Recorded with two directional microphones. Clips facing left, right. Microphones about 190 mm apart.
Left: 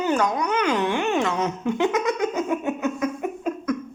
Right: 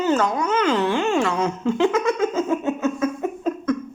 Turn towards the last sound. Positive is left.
turn(degrees=15)  # may be behind; listen again after turning